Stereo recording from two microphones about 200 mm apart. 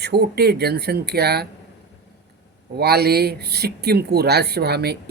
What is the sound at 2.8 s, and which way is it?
Speech, 50° right (ahead or behind).